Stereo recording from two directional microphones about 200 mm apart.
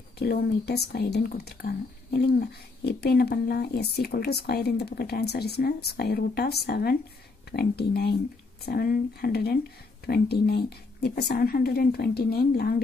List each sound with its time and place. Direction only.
0.2 s speech: 50° left (ahead or behind)